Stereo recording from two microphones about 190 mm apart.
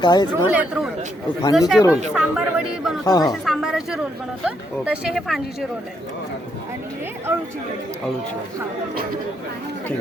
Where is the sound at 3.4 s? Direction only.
Centre (ahead or behind).